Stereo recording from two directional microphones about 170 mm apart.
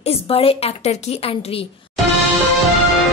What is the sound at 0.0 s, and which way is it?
A woman's voice, 35° left (ahead or behind).